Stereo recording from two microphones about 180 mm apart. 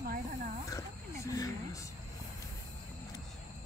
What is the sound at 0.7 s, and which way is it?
Wild animals, 20° left (ahead or behind).